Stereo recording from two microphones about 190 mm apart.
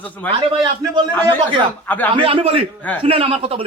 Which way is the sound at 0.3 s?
25° right (ahead or behind).